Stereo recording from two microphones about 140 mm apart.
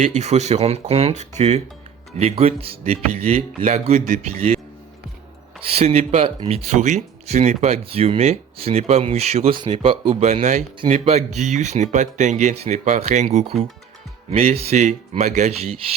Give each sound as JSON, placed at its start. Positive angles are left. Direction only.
{"t": 0.0, "sound": "speech", "side_deg": -55}
{"t": 5.7, "sound": "speech", "side_deg": -50}
{"t": 6.7, "sound": "speech", "side_deg": -55}
{"t": 9.6, "sound": "speech", "side_deg": -35}